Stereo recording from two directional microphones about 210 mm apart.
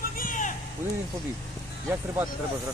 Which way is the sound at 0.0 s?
40° left (ahead or behind).